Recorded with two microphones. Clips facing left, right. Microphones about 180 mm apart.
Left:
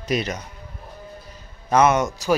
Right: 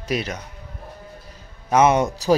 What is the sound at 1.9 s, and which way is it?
Speech, 30° right (ahead or behind).